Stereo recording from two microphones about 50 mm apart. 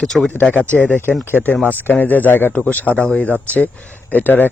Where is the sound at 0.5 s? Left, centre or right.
Left.